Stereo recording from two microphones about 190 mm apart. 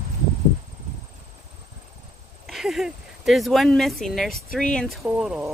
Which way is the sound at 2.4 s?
Centre (ahead or behind).